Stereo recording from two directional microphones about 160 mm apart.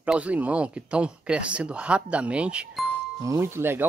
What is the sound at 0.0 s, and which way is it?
Speech, 10° right (ahead or behind).